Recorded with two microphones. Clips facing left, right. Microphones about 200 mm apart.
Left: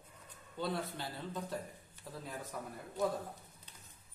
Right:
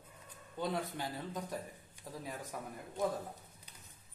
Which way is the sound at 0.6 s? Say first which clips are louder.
Right 1 dB; 15° right (ahead or behind).